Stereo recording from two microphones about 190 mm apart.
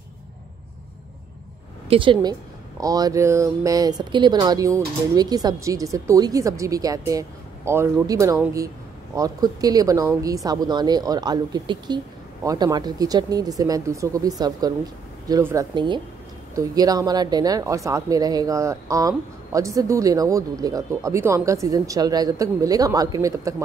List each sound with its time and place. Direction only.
1.9 s a woman's voice: 25° right (ahead or behind)